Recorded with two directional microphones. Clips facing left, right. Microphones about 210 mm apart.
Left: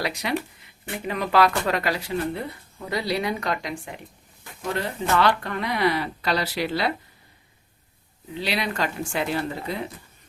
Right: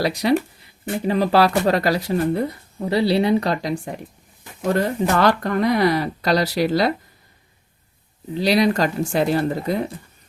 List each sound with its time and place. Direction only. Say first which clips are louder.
0.0 s speech: right 8 dB; 35° right (ahead or behind)
5.1 s speech: right 2 dB; 45° right (ahead or behind)
8.4 s speech: right 9 dB; 40° right (ahead or behind)